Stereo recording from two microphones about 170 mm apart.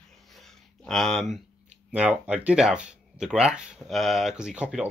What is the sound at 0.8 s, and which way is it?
Speech, 5° left (ahead or behind).